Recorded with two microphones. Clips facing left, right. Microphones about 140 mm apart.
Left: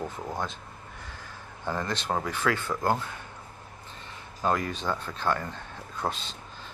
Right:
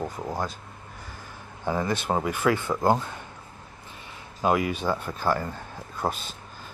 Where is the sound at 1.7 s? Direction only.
10° right (ahead or behind).